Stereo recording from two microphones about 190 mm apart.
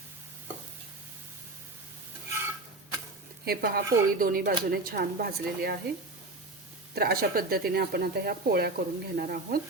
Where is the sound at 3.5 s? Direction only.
55° right (ahead or behind).